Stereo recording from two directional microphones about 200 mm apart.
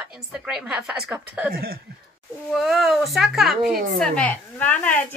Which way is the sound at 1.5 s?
50° right (ahead or behind).